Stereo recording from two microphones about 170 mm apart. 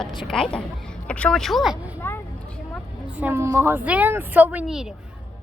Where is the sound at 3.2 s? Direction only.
15° right (ahead or behind).